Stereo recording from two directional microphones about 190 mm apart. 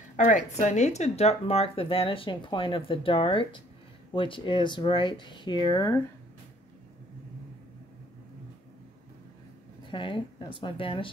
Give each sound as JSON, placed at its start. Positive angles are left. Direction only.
{"t": 0.1, "sound": "speech", "side_deg": 40}
{"t": 9.8, "sound": "a woman's voice", "side_deg": 25}